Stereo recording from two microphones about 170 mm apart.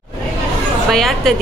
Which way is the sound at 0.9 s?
Centre (ahead or behind).